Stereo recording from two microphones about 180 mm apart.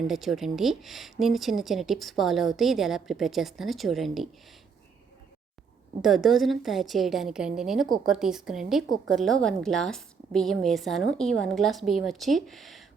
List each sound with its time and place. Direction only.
0.1 s speech: centre (ahead or behind)
6.0 s speech: centre (ahead or behind)